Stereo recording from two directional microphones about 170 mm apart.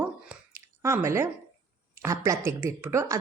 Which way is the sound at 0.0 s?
15° right (ahead or behind).